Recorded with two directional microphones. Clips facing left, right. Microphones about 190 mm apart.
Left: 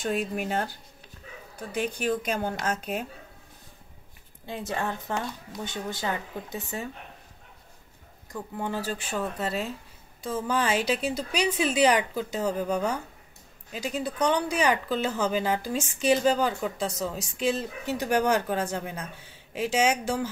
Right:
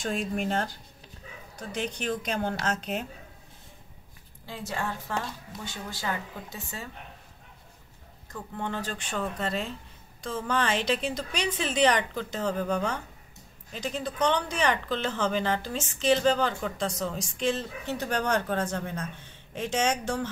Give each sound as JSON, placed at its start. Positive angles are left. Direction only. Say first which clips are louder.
{"t": 0.0, "sound": "speech", "louder": "left 1 dB", "side_deg": 5}
{"t": 1.8, "sound": "speech", "louder": "left 4 dB", "side_deg": 10}
{"t": 4.5, "sound": "speech", "louder": "left 3 dB", "side_deg": 20}
{"t": 8.3, "sound": "speech", "louder": "left 2 dB", "side_deg": 10}